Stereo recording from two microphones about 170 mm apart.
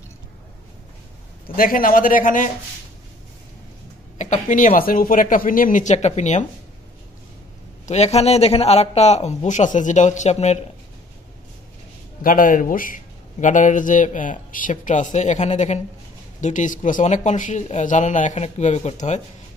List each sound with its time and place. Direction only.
1.5 s a man's voice: 60° left (ahead or behind)
4.2 s a man's voice: 45° left (ahead or behind)
7.8 s a man's voice: 40° left (ahead or behind)
12.2 s a man's voice: 55° left (ahead or behind)